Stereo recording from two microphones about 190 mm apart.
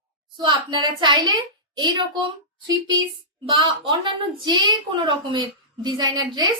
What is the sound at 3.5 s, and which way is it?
A woman's voice, 25° right (ahead or behind).